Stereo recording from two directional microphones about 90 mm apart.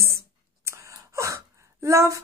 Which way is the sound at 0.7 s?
35° right (ahead or behind).